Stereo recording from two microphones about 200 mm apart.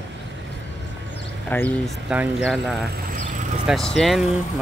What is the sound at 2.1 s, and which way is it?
Speech, 5° right (ahead or behind).